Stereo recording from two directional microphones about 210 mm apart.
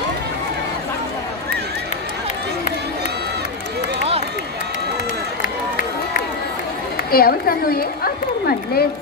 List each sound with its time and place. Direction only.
5.4 s run: 40° left (ahead or behind)
7.1 s a woman's voice: 45° left (ahead or behind)